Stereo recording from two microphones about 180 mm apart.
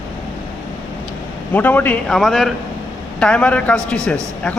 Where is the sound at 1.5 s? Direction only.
10° left (ahead or behind).